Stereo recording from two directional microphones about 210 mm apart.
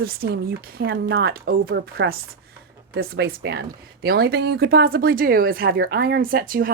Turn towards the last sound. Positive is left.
turn(degrees=-40)  # may be behind; listen again after turning